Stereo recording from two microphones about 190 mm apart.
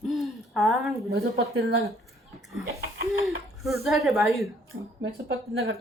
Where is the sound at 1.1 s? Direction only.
55° right (ahead or behind).